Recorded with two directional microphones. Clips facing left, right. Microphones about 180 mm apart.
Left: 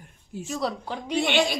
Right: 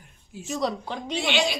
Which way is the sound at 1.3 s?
55° left (ahead or behind).